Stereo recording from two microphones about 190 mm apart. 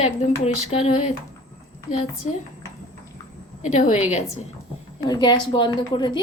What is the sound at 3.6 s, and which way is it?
Speech, 40° left (ahead or behind).